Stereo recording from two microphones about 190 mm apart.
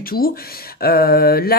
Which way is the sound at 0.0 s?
50° left (ahead or behind).